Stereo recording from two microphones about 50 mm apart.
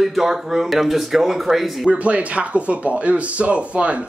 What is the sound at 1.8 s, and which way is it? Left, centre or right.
Speech, right.